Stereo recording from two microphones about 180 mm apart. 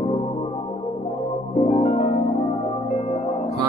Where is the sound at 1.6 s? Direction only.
40° left (ahead or behind).